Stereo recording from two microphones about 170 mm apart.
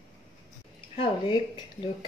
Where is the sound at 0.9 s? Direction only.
30° left (ahead or behind).